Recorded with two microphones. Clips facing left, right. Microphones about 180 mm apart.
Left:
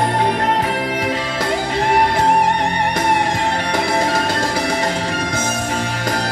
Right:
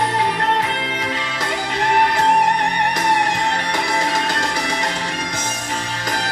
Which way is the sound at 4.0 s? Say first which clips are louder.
Left 3 dB; 30° left (ahead or behind).